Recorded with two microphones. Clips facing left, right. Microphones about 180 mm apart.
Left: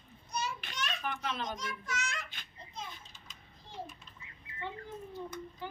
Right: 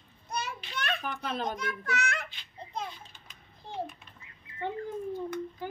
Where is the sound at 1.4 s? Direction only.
60° right (ahead or behind).